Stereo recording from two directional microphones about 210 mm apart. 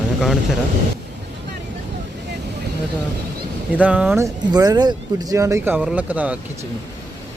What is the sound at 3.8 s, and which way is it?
Speech, 5° right (ahead or behind).